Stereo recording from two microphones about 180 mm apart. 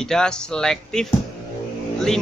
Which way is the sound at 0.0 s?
5° left (ahead or behind).